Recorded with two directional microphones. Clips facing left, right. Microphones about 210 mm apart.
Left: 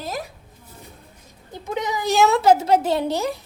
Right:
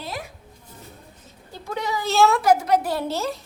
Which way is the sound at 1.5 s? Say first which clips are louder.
Left 2 dB; 20° left (ahead or behind).